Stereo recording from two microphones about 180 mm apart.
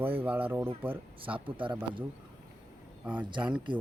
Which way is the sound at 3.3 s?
25° right (ahead or behind).